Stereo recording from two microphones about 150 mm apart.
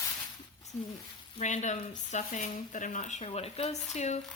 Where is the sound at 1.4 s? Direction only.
55° left (ahead or behind).